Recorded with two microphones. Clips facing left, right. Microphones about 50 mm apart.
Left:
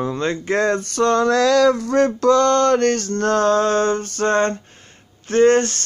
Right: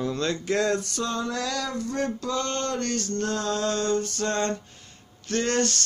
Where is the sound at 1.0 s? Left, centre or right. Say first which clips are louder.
Left 13 dB; left.